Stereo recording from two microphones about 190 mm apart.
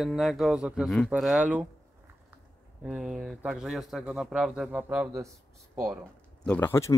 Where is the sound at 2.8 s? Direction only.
5° right (ahead or behind).